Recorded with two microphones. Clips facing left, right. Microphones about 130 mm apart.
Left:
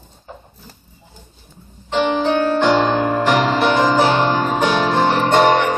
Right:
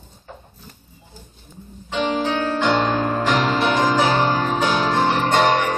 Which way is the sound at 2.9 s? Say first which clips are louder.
Left 3 dB; 25° left (ahead or behind).